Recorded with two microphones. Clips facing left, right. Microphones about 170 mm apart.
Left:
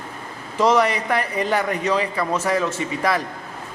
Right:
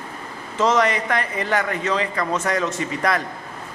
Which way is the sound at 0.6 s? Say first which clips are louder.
Left 1 dB; 10° left (ahead or behind).